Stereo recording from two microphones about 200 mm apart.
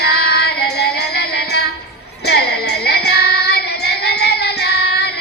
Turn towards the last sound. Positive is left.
turn(degrees=55)  # may be behind; listen again after turning